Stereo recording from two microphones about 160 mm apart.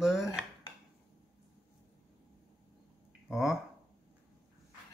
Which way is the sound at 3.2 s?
Centre (ahead or behind).